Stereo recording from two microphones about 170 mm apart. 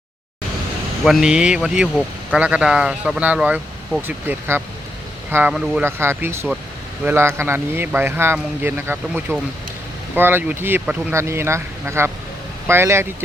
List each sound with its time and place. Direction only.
1.0 s speech: centre (ahead or behind)
5.8 s speech: 15° right (ahead or behind)